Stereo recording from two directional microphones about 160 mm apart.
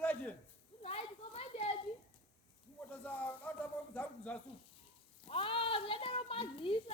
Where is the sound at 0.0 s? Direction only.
10° left (ahead or behind).